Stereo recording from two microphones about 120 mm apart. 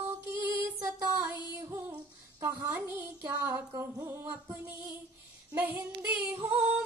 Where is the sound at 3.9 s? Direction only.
20° right (ahead or behind).